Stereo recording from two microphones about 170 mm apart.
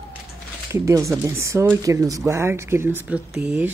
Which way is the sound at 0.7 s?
15° right (ahead or behind).